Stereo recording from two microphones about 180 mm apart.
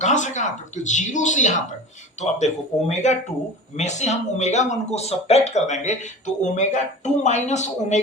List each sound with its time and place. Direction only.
0.0 s speech: 40° left (ahead or behind)